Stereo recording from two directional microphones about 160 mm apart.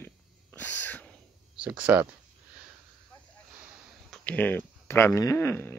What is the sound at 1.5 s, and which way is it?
Speech, 10° right (ahead or behind).